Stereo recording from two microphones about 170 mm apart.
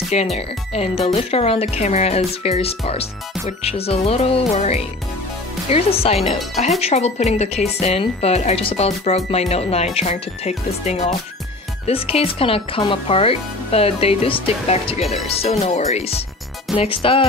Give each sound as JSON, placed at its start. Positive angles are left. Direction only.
{"t": 0.1, "sound": "speech", "side_deg": 40}